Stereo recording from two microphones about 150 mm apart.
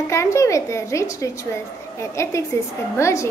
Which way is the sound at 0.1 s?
20° left (ahead or behind).